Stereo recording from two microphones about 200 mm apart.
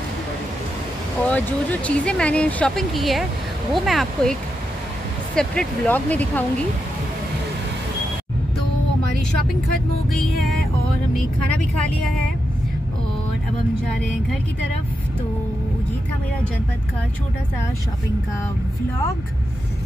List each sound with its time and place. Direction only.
1.3 s speech: 5° left (ahead or behind)
10.1 s speech: centre (ahead or behind)